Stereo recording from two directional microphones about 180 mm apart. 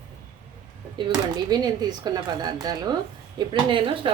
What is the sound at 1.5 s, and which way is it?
A woman's voice, 20° right (ahead or behind).